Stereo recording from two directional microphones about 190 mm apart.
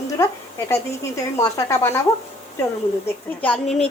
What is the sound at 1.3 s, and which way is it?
Speech, 15° left (ahead or behind).